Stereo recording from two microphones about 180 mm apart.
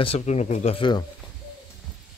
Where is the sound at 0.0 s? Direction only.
35° left (ahead or behind).